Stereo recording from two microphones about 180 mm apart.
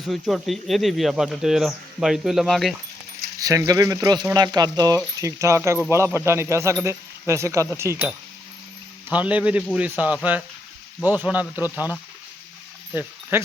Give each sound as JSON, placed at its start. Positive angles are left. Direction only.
{"t": 0.0, "sound": "speech", "side_deg": 0}
{"t": 3.3, "sound": "speech", "side_deg": -20}
{"t": 12.9, "sound": "a sound", "side_deg": -10}